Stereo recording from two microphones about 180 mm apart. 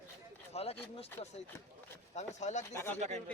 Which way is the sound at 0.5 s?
35° left (ahead or behind).